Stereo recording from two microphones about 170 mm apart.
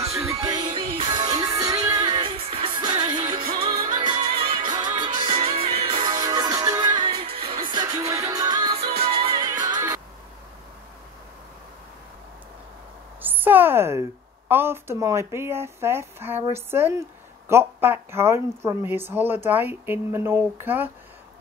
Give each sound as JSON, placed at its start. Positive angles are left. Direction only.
{"t": 0.0, "sound": "music", "side_deg": -20}
{"t": 13.2, "sound": "a sound", "side_deg": -10}
{"t": 14.5, "sound": "speech", "side_deg": -15}